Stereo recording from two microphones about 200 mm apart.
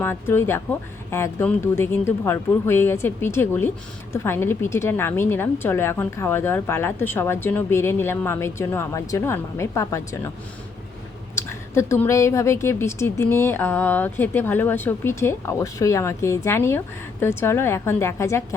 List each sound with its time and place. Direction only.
0.0 s a woman's voice: 10° left (ahead or behind)
11.3 s a woman's voice: 15° left (ahead or behind)